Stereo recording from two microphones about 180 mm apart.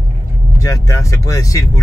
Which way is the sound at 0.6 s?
15° left (ahead or behind).